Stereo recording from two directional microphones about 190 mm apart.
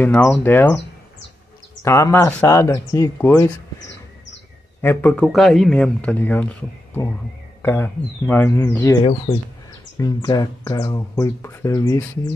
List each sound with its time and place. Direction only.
0.0 s speech: 10° left (ahead or behind)
1.8 s speech: 15° left (ahead or behind)